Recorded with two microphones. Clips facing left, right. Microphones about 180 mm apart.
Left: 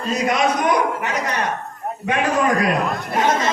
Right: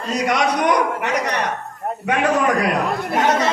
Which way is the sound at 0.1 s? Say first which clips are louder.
Even; 75° right (ahead or behind).